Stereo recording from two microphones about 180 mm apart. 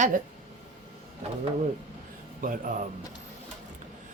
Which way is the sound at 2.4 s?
50° right (ahead or behind).